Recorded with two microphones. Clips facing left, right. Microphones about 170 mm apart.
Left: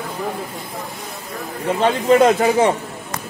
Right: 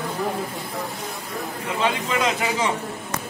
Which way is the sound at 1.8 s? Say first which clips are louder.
Left 10 dB; 50° left (ahead or behind).